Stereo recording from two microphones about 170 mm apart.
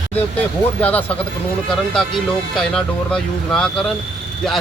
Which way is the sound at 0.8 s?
10° left (ahead or behind).